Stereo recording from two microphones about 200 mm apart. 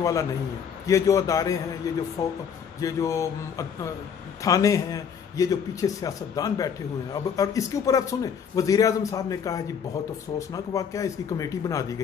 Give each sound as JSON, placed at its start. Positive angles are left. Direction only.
{"t": 0.0, "sound": "a man's voice", "side_deg": 15}